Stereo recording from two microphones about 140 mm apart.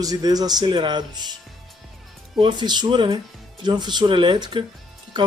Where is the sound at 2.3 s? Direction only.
35° right (ahead or behind).